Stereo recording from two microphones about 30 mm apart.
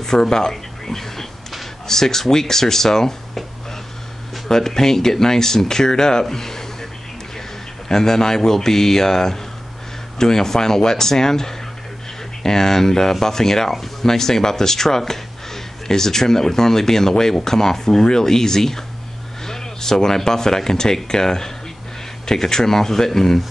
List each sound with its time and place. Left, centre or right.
0.0 s speech: centre
4.5 s speech: centre
6.2 s a sound: centre
7.9 s speech: centre